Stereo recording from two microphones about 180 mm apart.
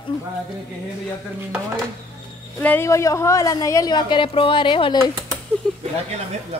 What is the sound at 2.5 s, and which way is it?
A woman's voice, 10° left (ahead or behind).